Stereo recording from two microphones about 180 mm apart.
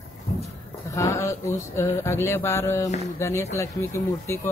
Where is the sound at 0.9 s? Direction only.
15° left (ahead or behind).